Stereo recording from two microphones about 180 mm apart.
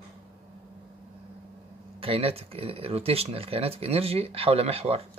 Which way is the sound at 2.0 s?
30° right (ahead or behind).